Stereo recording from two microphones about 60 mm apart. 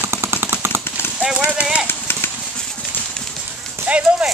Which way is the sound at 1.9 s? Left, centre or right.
Left.